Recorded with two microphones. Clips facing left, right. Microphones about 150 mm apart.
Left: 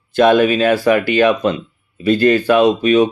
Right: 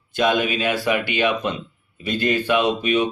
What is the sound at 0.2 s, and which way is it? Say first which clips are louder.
Speech: left 9 dB; 50° left (ahead or behind).